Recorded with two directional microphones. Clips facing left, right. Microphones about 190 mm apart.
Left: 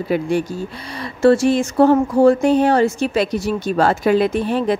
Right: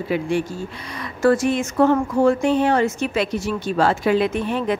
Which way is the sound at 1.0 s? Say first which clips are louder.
Left 4 dB; 30° left (ahead or behind).